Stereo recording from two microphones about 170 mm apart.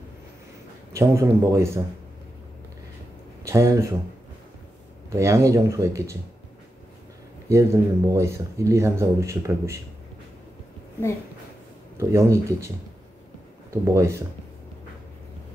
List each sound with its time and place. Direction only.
0.9 s speech: 15° right (ahead or behind)
3.4 s speech: 15° right (ahead or behind)
5.1 s speech: 15° right (ahead or behind)
7.4 s speech: 15° right (ahead or behind)
12.0 s speech: 15° right (ahead or behind)